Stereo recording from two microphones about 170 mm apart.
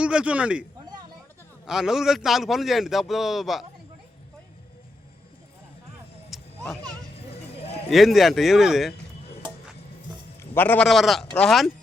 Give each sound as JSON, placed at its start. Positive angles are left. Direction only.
{"t": 0.0, "sound": "speech", "side_deg": -5}
{"t": 1.6, "sound": "a man's voice", "side_deg": -5}
{"t": 6.3, "sound": "vehicle", "side_deg": 0}
{"t": 7.2, "sound": "clip-clop", "side_deg": 35}
{"t": 7.9, "sound": "a man's voice", "side_deg": 0}
{"t": 10.4, "sound": "a man's voice", "side_deg": 10}
{"t": 10.8, "sound": "a man's voice", "side_deg": 0}